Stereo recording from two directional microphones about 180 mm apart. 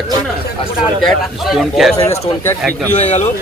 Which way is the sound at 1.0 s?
Centre (ahead or behind).